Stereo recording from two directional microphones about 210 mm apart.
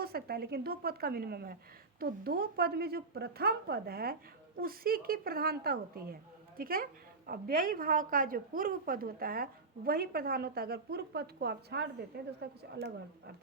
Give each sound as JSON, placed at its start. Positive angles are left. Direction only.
{"t": 0.0, "sound": "a woman's voice", "side_deg": -45}